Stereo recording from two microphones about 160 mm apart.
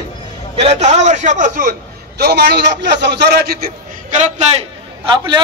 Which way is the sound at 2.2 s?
85° right.